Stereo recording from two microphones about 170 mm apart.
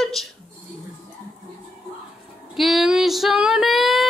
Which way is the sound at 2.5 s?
Centre (ahead or behind).